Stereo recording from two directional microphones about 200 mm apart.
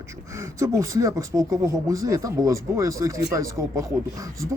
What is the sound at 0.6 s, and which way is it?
Speech, 15° right (ahead or behind).